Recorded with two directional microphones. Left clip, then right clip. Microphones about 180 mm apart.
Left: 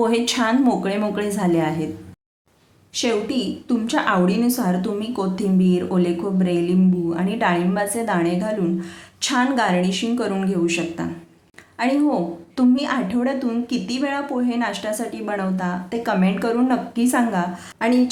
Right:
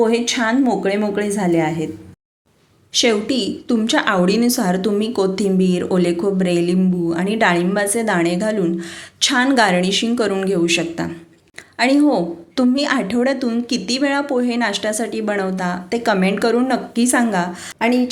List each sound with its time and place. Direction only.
0.0 s a woman's voice: 10° right (ahead or behind)
2.9 s a woman's voice: 20° right (ahead or behind)